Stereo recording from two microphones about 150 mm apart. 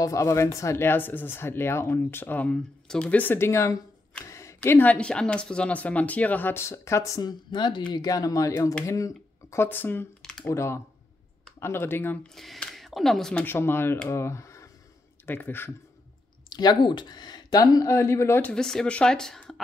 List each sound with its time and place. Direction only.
0.0 s speech: 20° left (ahead or behind)
4.3 s a sound: 20° left (ahead or behind)
4.6 s speech: 10° left (ahead or behind)
12.4 s speech: centre (ahead or behind)
16.4 s speech: 30° left (ahead or behind)
18.5 s a woman's voice: 5° left (ahead or behind)